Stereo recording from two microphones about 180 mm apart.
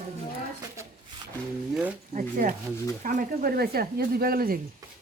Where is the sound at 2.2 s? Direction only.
50° right (ahead or behind).